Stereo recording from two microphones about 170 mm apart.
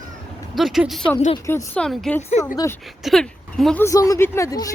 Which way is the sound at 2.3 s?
40° left (ahead or behind).